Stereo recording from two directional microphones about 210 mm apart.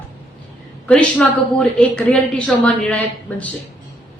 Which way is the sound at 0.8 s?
5° left (ahead or behind).